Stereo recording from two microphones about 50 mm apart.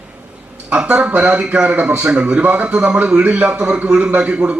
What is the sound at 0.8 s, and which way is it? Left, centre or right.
Speech, right.